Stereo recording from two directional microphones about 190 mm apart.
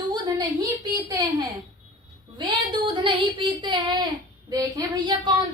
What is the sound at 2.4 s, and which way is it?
A woman's voice, 25° right (ahead or behind).